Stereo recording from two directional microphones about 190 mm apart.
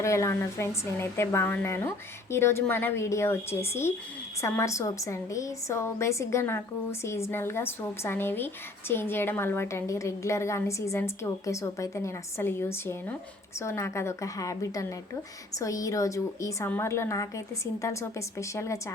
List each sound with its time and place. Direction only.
0.0 s a woman's voice: 15° left (ahead or behind)